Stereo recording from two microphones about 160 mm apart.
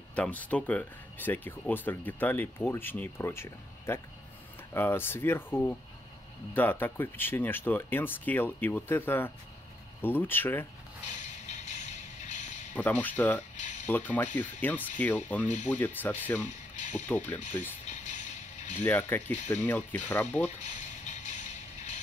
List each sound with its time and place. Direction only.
0.1 s speech: 10° left (ahead or behind)
11.1 s music: 45° left (ahead or behind)
12.7 s speech: 10° left (ahead or behind)
13.6 s a sound: 50° left (ahead or behind)
13.8 s speech: 10° left (ahead or behind)
16.4 s speech: 45° left (ahead or behind)
17.8 s music: 45° left (ahead or behind)
18.8 s speech: 10° left (ahead or behind)
20.4 s mechanisms: 45° left (ahead or behind)